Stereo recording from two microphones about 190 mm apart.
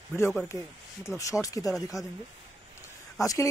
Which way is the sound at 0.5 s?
15° left (ahead or behind).